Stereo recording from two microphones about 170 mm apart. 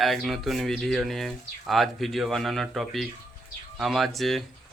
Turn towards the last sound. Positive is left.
turn(degrees=0)  # may be behind; listen again after turning